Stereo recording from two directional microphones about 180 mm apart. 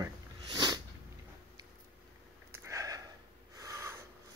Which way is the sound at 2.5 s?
15° right (ahead or behind).